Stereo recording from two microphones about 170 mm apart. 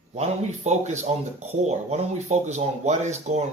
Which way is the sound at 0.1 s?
40° right (ahead or behind).